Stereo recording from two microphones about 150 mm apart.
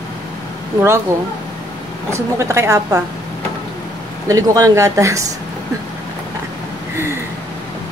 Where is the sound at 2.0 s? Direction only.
20° right (ahead or behind).